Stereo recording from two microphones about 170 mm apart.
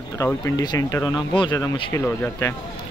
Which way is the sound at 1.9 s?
15° left (ahead or behind).